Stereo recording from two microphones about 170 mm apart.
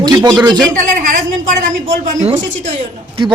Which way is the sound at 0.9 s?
50° right (ahead or behind).